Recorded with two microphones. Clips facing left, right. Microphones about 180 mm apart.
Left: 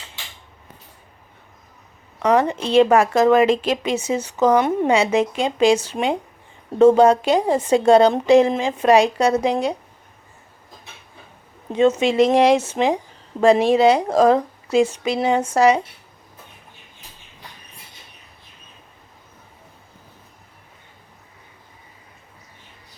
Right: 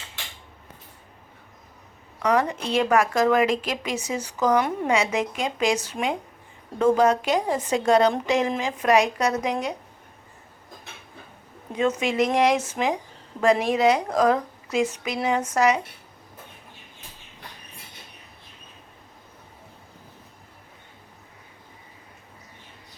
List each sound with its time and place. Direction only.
2.2 s a woman's voice: 25° left (ahead or behind)
11.7 s a woman's voice: 25° left (ahead or behind)